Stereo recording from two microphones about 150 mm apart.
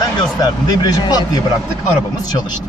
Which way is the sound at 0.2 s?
25° left (ahead or behind).